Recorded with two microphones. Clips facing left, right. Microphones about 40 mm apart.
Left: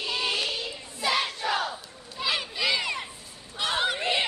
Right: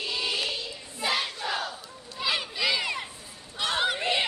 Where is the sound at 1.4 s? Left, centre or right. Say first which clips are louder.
Left 3 dB; left.